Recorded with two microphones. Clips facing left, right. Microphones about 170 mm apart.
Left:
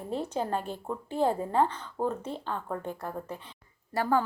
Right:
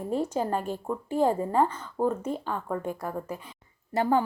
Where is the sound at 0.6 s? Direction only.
40° right (ahead or behind).